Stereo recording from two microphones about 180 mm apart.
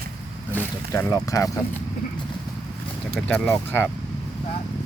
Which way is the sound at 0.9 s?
20° left (ahead or behind).